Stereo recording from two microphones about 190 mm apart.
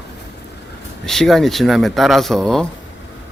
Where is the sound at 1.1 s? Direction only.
Centre (ahead or behind).